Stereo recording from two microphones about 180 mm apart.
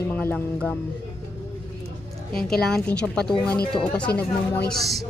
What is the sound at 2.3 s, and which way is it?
Speech, 5° left (ahead or behind).